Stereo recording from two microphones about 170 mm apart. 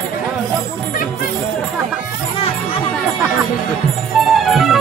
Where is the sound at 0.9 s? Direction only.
55° left (ahead or behind).